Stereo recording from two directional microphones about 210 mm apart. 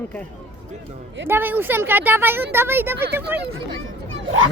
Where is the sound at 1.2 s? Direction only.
10° right (ahead or behind).